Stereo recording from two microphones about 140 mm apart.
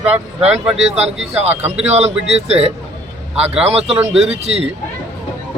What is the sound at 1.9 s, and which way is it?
Speech, 50° right (ahead or behind).